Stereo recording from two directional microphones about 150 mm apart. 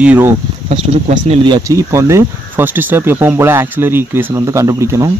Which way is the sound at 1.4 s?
25° right (ahead or behind).